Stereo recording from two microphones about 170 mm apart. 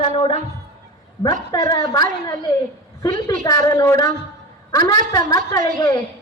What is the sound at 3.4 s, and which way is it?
A woman's voice, 20° left (ahead or behind).